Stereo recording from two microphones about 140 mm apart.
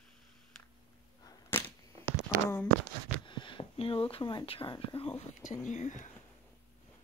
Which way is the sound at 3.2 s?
35° left (ahead or behind).